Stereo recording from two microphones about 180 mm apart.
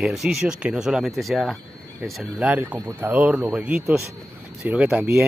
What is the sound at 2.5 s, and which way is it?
Speech, 10° right (ahead or behind).